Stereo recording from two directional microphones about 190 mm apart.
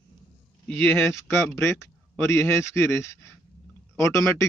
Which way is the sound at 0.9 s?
10° left (ahead or behind).